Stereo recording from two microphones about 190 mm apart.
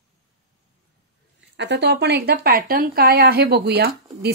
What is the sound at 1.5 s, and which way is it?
A woman's voice, 65° right (ahead or behind).